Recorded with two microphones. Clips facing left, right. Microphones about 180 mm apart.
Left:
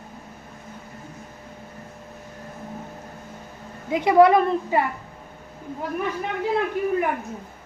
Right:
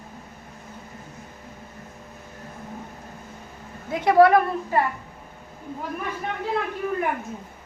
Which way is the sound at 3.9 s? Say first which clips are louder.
Left 1 dB; 15° left (ahead or behind).